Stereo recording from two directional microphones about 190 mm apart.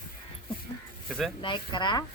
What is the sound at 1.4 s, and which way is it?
Speech, 25° left (ahead or behind).